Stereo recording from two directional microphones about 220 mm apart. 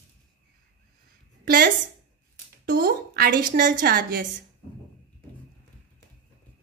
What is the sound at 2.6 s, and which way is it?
A woman's voice, 45° right (ahead or behind).